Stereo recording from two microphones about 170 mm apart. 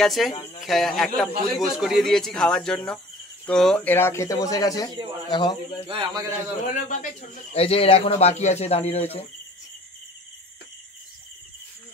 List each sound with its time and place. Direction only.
0.0 s a man's voice: centre (ahead or behind); by 5.6 s 30° left (ahead or behind)
5.9 s a man's voice: 30° right (ahead or behind)
6.7 s speech: 45° left (ahead or behind)